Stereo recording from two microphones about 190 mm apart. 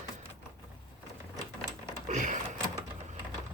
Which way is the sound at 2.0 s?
40° right (ahead or behind).